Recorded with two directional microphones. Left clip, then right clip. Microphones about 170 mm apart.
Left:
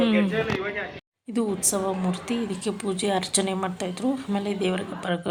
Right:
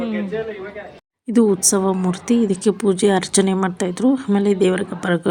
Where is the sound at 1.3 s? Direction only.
30° right (ahead or behind).